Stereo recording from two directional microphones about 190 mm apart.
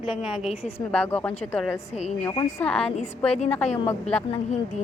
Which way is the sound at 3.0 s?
35° left (ahead or behind).